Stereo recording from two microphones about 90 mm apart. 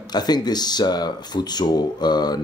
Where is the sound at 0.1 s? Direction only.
50° left (ahead or behind).